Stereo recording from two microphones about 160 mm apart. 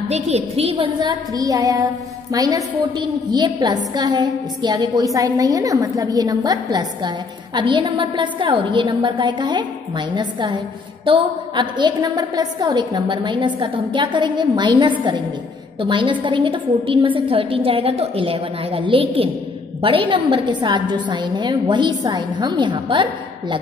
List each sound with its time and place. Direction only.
0.1 s a woman's voice: 40° right (ahead or behind)
1.0 s a woman's voice: 20° right (ahead or behind)